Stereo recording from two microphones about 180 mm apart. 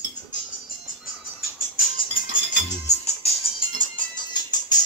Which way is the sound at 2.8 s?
35° left (ahead or behind).